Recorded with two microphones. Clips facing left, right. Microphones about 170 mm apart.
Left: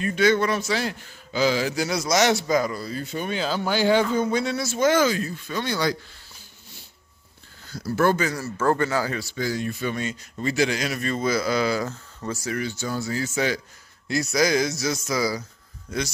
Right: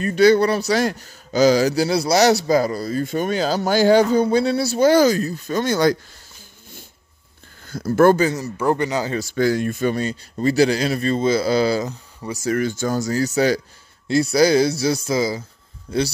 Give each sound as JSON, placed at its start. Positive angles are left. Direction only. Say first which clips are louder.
{"t": 0.0, "sound": "speech", "louder": "right 6 dB", "side_deg": -35}
{"t": 7.6, "sound": "speech", "louder": "right 7 dB", "side_deg": -50}
{"t": 8.2, "sound": "speech", "louder": "right 5 dB", "side_deg": -20}
{"t": 9.2, "sound": "speech", "louder": "right 8 dB", "side_deg": -55}
{"t": 11.8, "sound": "speech", "louder": "right 2 dB", "side_deg": -15}
{"t": 12.4, "sound": "speech", "louder": "right 9 dB", "side_deg": -50}